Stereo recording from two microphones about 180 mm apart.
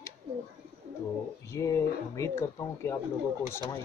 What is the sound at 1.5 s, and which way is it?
Speech, 15° left (ahead or behind).